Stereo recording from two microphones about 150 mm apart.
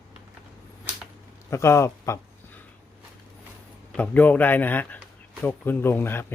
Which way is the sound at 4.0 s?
10° left (ahead or behind).